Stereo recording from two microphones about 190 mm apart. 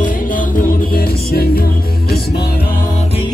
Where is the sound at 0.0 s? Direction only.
45° left (ahead or behind).